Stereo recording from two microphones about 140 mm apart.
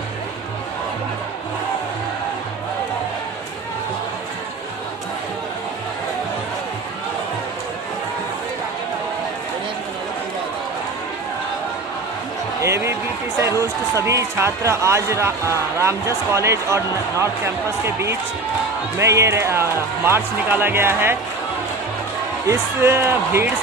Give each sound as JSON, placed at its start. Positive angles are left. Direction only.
{"t": 12.6, "sound": "a sound", "side_deg": -20}
{"t": 13.6, "sound": "speech", "side_deg": -20}
{"t": 22.5, "sound": "speech", "side_deg": -20}